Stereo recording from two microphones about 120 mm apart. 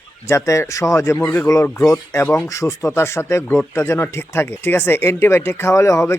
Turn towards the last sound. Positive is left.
turn(degrees=25)  # may be behind; listen again after turning